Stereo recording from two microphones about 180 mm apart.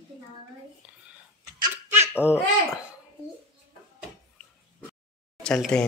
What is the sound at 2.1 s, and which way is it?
Speech, 10° left (ahead or behind).